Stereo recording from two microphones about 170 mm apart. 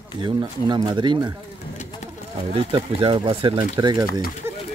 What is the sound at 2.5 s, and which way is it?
Speech, 30° right (ahead or behind).